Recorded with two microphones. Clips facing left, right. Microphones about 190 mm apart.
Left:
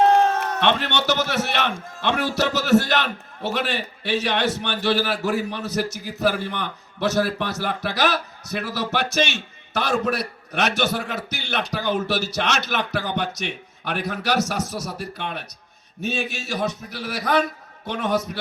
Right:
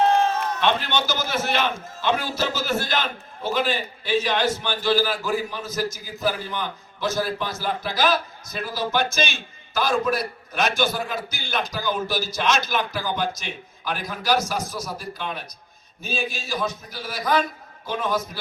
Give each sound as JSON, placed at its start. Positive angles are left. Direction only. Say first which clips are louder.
{"t": 0.2, "sound": "a man's voice", "louder": "left 2 dB", "side_deg": 65}